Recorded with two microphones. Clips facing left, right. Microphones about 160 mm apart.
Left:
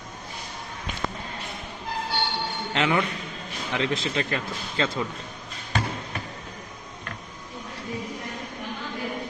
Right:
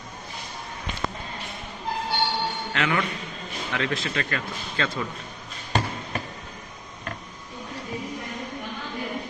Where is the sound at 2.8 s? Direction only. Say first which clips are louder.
Left 3 dB; 25° left (ahead or behind).